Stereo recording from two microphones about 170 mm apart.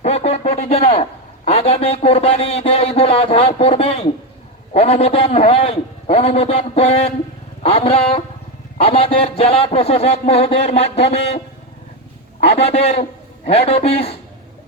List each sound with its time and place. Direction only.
0.0 s a sound: 40° left (ahead or behind)
1.5 s a man's voice: 35° left (ahead or behind)
12.4 s a man's voice: 35° left (ahead or behind)